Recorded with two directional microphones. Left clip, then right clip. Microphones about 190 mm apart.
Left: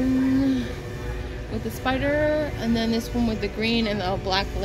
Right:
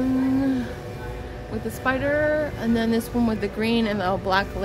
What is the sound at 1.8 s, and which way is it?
Speech, centre (ahead or behind).